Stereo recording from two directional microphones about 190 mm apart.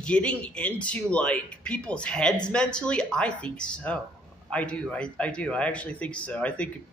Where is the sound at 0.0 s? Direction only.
5° left (ahead or behind).